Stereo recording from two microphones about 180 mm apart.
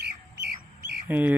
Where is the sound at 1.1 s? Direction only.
10° right (ahead or behind).